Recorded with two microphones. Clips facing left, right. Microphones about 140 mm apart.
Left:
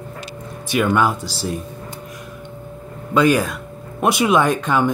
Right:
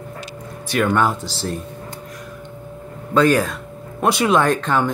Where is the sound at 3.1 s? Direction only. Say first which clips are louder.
Even; 10° left (ahead or behind).